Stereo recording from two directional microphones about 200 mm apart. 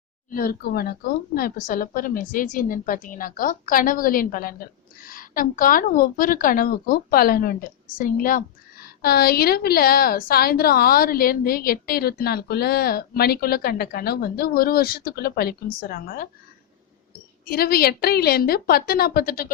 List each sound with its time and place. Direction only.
0.3 s speech: 45° left (ahead or behind)
17.4 s speech: 50° left (ahead or behind)